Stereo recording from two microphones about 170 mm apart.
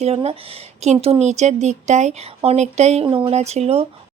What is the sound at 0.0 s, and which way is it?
A woman's voice, 35° right (ahead or behind).